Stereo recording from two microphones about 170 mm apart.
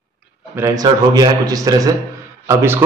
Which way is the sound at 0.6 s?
20° right (ahead or behind).